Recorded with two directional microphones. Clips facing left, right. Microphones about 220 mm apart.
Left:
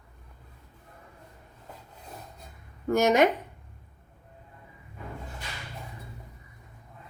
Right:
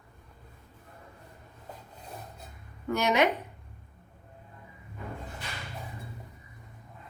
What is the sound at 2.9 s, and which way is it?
Speech, 45° left (ahead or behind).